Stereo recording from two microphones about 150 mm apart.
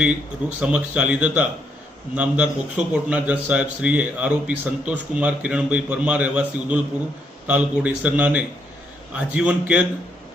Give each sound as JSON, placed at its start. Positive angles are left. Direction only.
{"t": 0.6, "sound": "a man's voice", "side_deg": -5}